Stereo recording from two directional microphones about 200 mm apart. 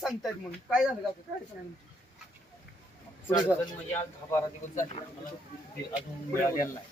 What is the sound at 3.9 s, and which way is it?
Speech, 15° left (ahead or behind).